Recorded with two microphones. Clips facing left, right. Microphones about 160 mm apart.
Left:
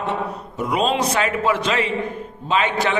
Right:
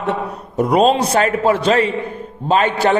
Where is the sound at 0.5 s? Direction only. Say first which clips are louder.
Right 7 dB; 40° right (ahead or behind).